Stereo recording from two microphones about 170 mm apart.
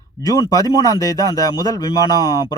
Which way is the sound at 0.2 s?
20° left (ahead or behind).